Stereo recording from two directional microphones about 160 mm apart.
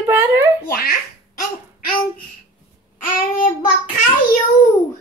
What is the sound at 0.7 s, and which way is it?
Speech, 70° left (ahead or behind).